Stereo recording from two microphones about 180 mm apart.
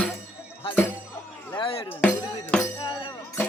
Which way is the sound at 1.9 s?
10° left (ahead or behind).